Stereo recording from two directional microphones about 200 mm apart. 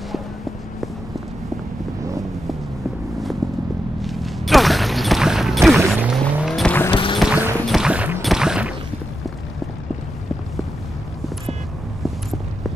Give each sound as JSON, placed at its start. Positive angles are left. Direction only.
{"t": 4.0, "sound": "a sound", "side_deg": 0}
{"t": 6.9, "sound": "music", "side_deg": 25}
{"t": 7.2, "sound": "clip-clop", "side_deg": -5}
{"t": 7.5, "sound": "music", "side_deg": 0}